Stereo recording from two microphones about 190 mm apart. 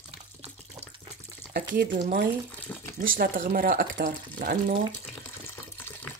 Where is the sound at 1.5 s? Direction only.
45° right (ahead or behind).